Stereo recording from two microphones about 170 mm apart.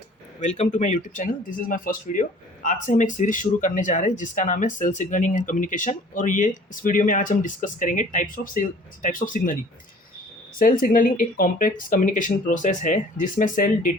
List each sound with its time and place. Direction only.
0.3 s speech: 40° left (ahead or behind)
10.6 s speech: 55° left (ahead or behind)